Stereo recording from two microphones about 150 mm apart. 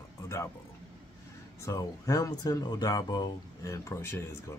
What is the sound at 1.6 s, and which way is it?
Speech, 25° left (ahead or behind).